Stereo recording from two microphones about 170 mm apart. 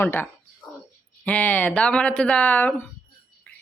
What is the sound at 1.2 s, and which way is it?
Speech, 10° left (ahead or behind).